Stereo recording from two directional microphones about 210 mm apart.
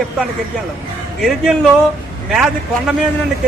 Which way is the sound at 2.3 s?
Centre (ahead or behind).